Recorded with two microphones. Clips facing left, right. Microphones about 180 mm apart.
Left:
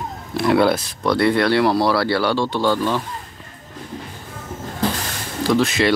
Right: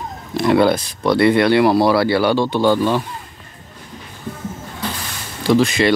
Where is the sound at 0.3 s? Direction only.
Centre (ahead or behind).